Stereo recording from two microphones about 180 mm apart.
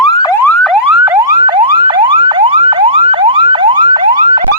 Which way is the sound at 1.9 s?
25° right (ahead or behind).